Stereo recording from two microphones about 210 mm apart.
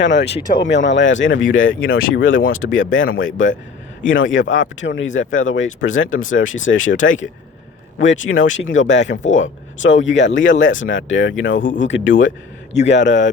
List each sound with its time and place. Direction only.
0.0 s speech: 60° left (ahead or behind)
2.6 s speech: 55° left (ahead or behind)
3.2 s speech: 65° left (ahead or behind)